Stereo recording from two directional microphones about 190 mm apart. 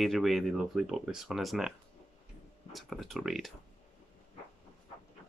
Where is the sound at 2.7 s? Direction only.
Centre (ahead or behind).